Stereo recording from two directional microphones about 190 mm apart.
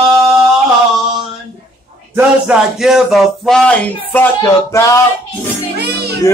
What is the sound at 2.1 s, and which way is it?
Speech, centre (ahead or behind).